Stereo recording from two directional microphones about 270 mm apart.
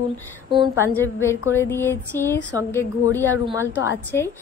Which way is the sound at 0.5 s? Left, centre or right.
Centre.